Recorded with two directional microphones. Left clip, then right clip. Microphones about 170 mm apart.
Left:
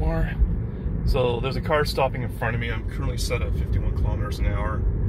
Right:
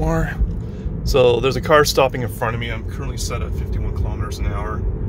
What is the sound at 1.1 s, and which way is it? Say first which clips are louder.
Speech: right 10 dB; 60° right (ahead or behind).